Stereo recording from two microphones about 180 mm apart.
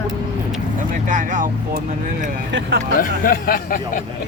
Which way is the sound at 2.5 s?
85° right.